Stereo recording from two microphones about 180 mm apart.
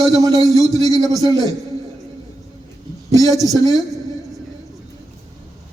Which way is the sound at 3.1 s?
20° right (ahead or behind).